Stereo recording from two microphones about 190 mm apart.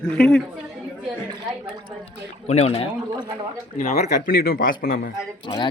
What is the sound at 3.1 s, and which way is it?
Speech, 20° right (ahead or behind).